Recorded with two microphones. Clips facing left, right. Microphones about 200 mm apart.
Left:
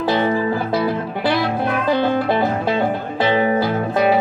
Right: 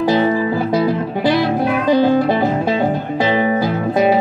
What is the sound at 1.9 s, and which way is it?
Music, 10° right (ahead or behind).